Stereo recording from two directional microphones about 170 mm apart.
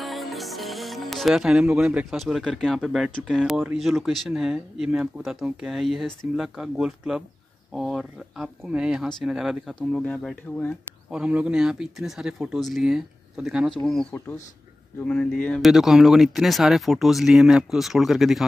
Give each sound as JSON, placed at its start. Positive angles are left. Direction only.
{"t": 0.0, "sound": "speech", "side_deg": 0}
{"t": 11.1, "sound": "speech", "side_deg": -5}
{"t": 14.1, "sound": "speech", "side_deg": 15}
{"t": 15.0, "sound": "speech", "side_deg": 5}